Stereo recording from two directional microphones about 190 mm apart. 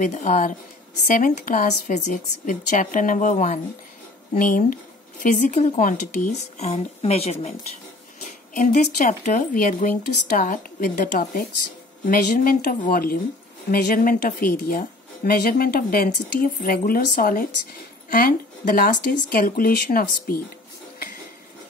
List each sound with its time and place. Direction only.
0.0 s a woman's voice: 40° left (ahead or behind)
8.9 s a woman's voice: 40° left (ahead or behind)